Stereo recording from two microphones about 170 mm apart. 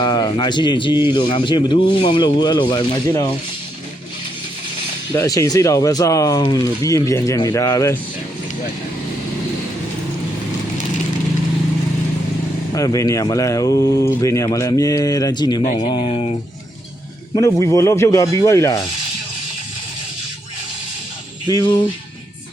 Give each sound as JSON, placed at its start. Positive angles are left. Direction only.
{"t": 0.0, "sound": "speech", "side_deg": 25}
{"t": 5.1, "sound": "speech", "side_deg": 20}
{"t": 12.7, "sound": "speech", "side_deg": 20}
{"t": 17.3, "sound": "speech", "side_deg": 20}
{"t": 21.4, "sound": "speech", "side_deg": 25}